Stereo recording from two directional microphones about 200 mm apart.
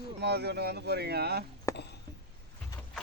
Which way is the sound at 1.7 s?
15° left (ahead or behind).